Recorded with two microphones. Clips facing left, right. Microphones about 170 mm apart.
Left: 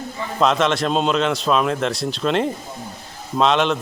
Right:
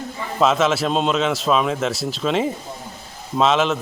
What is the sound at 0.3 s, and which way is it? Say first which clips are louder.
A man's voice: right 1 dB; 5° right (ahead or behind).